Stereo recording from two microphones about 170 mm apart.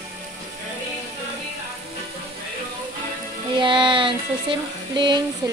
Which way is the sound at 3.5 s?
30° right (ahead or behind).